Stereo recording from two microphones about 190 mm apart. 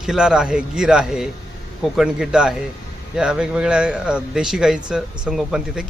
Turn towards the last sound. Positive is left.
turn(degrees=-5)  # may be behind; listen again after turning